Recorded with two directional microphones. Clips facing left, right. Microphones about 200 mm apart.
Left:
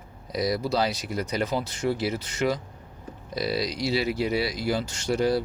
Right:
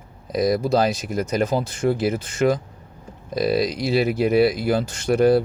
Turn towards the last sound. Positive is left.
turn(degrees=-55)  # may be behind; listen again after turning